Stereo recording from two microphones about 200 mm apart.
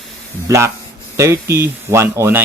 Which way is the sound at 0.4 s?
15° right (ahead or behind).